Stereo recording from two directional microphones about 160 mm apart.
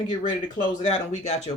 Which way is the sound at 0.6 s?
45° left (ahead or behind).